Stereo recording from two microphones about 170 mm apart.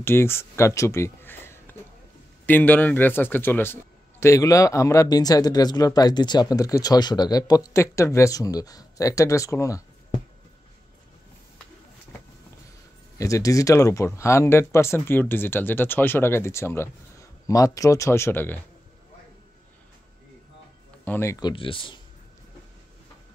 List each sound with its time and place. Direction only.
0.0 s a man's voice: 15° left (ahead or behind)
13.2 s speech: 20° left (ahead or behind)
21.0 s a man's voice: 15° left (ahead or behind); by 22.0 s 30° left (ahead or behind)